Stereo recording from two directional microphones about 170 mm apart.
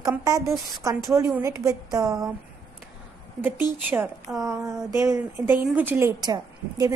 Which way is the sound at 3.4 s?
10° right (ahead or behind).